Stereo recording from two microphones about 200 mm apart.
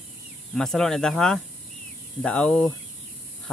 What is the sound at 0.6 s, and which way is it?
Speech, centre (ahead or behind).